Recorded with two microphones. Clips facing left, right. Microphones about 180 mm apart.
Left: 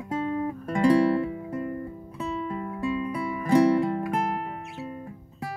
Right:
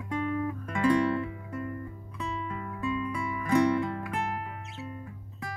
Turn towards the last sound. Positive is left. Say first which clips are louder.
# left 5 dB
turn(degrees=35)  # may be behind; listen again after turning